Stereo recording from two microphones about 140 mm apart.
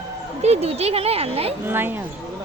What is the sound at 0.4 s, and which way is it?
Speech, 50° right (ahead or behind).